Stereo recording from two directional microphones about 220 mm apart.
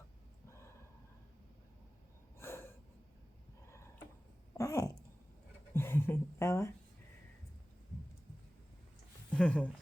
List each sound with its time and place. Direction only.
2.4 s snort: 10° left (ahead or behind)
4.5 s a sound: 15° left (ahead or behind)
9.3 s speech: 5° left (ahead or behind)